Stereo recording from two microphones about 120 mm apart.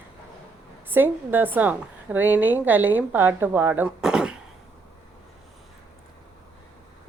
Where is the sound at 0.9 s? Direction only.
15° right (ahead or behind).